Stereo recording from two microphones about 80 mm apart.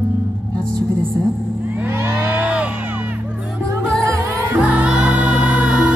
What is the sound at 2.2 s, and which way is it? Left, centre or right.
Crowd, centre.